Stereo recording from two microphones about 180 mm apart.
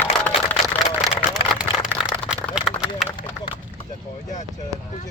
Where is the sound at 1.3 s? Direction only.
5° right (ahead or behind).